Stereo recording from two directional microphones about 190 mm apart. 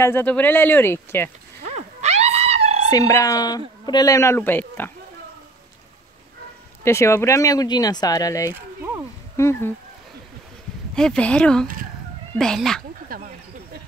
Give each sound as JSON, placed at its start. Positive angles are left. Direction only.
{"t": 0.0, "sound": "speech", "side_deg": 10}
{"t": 1.6, "sound": "wail", "side_deg": -35}
{"t": 2.9, "sound": "speech", "side_deg": 20}
{"t": 6.8, "sound": "speech", "side_deg": 15}
{"t": 8.5, "sound": "a sound", "side_deg": -15}
{"t": 9.4, "sound": "speech", "side_deg": 15}
{"t": 11.0, "sound": "speech", "side_deg": 5}
{"t": 13.1, "sound": "a sound", "side_deg": -50}